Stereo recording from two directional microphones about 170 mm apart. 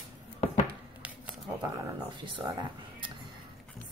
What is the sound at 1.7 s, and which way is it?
A woman's voice, 25° right (ahead or behind).